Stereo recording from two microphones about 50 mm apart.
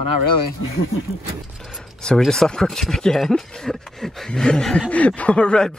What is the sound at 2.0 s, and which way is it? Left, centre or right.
Speech, centre.